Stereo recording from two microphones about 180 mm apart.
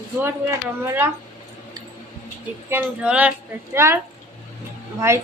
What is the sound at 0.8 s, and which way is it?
Speech, 10° right (ahead or behind).